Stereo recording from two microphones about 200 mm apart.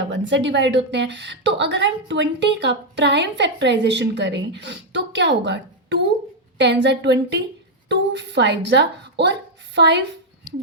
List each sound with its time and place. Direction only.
0.1 s a woman's voice: 60° right (ahead or behind)